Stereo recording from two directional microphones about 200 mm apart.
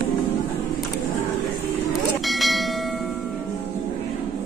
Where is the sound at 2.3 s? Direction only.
Centre (ahead or behind).